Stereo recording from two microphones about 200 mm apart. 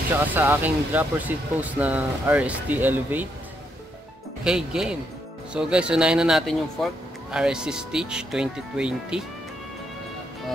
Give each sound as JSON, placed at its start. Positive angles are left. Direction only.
{"t": 0.1, "sound": "speech", "side_deg": -10}
{"t": 4.5, "sound": "speech", "side_deg": -5}